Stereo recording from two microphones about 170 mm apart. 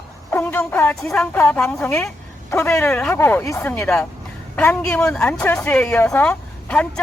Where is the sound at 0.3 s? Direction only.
10° left (ahead or behind).